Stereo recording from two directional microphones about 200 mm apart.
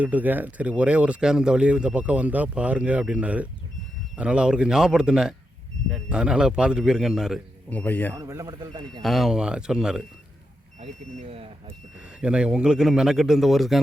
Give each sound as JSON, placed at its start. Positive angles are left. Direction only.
{"t": 0.0, "sound": "a man's voice", "side_deg": -10}
{"t": 8.1, "sound": "speech", "side_deg": -15}
{"t": 9.0, "sound": "a man's voice", "side_deg": 0}
{"t": 10.8, "sound": "speech", "side_deg": -35}
{"t": 12.2, "sound": "a man's voice", "side_deg": -5}